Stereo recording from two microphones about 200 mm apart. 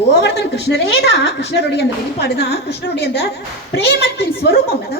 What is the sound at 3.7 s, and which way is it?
Speech, 55° left (ahead or behind).